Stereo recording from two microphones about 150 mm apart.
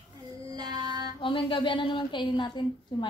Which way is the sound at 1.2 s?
35° left (ahead or behind).